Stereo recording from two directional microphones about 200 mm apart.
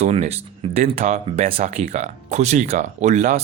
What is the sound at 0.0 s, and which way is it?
Speech, 30° right (ahead or behind).